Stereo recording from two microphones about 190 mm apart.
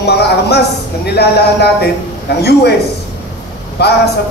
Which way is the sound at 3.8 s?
60° left (ahead or behind).